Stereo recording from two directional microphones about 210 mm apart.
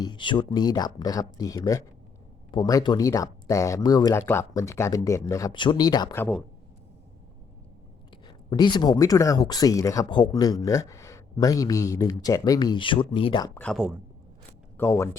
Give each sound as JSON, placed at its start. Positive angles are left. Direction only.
{"t": 0.0, "sound": "speech", "side_deg": 20}
{"t": 8.4, "sound": "speech", "side_deg": 20}
{"t": 13.6, "sound": "speech", "side_deg": 0}
{"t": 14.8, "sound": "speech", "side_deg": 15}